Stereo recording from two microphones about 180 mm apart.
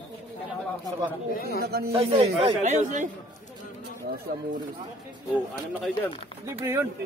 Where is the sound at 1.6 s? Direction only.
60° right (ahead or behind).